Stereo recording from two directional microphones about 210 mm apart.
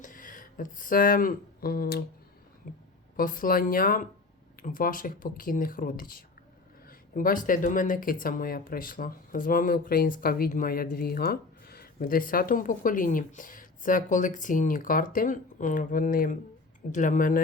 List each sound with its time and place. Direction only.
0.0 s speech: 40° left (ahead or behind)